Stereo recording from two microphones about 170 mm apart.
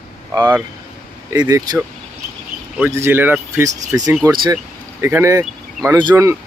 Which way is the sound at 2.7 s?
15° right (ahead or behind).